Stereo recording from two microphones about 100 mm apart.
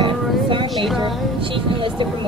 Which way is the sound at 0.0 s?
55° right (ahead or behind).